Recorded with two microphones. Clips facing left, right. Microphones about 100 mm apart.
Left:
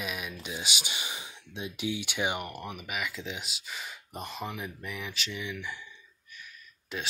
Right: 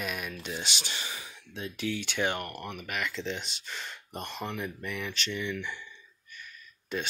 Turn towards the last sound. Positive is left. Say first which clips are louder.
# right 3 dB
turn(degrees=5)  # may be behind; listen again after turning